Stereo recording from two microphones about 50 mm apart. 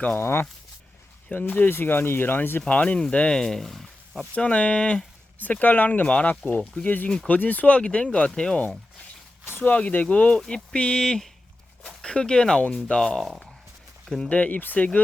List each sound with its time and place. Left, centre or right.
0.2 s speech: left
1.3 s speech: left
2.6 s speech: left
3.3 s a sound: centre
4.4 s speech: left
5.4 s speech: left
7.8 s speech: centre
9.5 s speech: left
9.7 s speech: left; by 13.1 s centre
14.3 s speech: left